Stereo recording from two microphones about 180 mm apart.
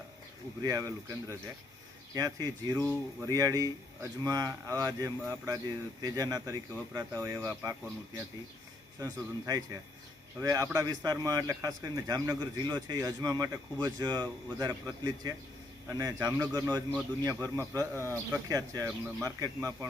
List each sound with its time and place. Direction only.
0.6 s a man's voice: 20° right (ahead or behind)